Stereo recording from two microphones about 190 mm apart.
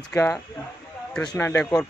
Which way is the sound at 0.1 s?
15° left (ahead or behind).